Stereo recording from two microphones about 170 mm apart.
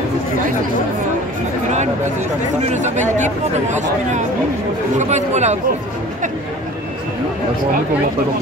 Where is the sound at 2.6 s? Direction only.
45° right (ahead or behind).